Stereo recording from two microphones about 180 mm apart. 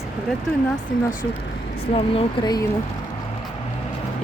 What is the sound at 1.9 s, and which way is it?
Speech, 30° left (ahead or behind).